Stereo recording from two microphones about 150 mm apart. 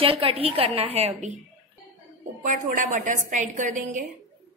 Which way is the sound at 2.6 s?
60° right (ahead or behind).